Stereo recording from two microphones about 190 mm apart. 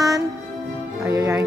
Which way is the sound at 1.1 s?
20° right (ahead or behind).